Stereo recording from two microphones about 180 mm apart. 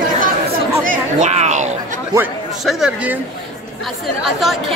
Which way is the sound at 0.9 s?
40° right (ahead or behind).